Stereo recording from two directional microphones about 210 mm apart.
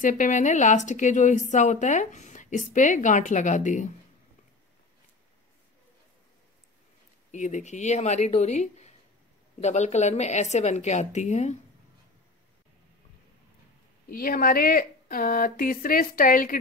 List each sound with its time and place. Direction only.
0.0 s a woman's voice: 40° left (ahead or behind)
7.2 s a woman's voice: 35° left (ahead or behind)
14.0 s speech: 45° left (ahead or behind)